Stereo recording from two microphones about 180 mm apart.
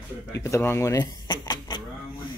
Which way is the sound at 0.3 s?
15° left (ahead or behind).